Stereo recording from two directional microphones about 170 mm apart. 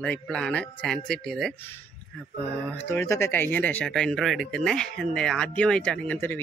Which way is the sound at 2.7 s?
15° left (ahead or behind).